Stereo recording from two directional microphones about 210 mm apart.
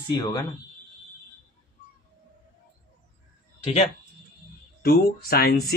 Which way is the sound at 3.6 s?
30° left (ahead or behind).